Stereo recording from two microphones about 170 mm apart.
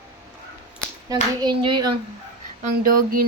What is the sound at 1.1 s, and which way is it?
Speech, 25° right (ahead or behind).